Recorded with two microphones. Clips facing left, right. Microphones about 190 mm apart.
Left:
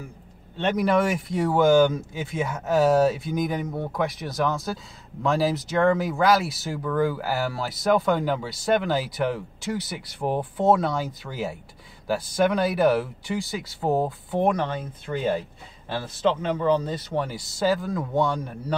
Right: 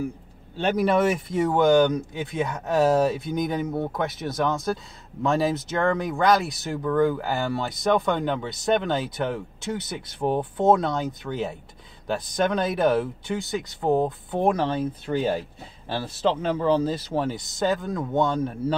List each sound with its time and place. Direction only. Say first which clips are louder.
0.6 s speech: right 1 dB; 5° right (ahead or behind)
15.9 s speech: even; 30° right (ahead or behind)
17.1 s speech: right 2 dB; centre (ahead or behind)